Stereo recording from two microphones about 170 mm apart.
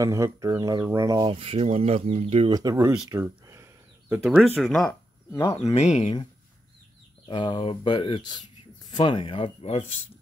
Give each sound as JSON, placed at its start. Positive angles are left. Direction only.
{"t": 0.0, "sound": "speech", "side_deg": -20}
{"t": 2.5, "sound": "speech", "side_deg": -20}
{"t": 4.2, "sound": "speech", "side_deg": 0}
{"t": 4.8, "sound": "speech", "side_deg": 15}
{"t": 5.8, "sound": "speech", "side_deg": 40}
{"t": 7.2, "sound": "speech", "side_deg": 25}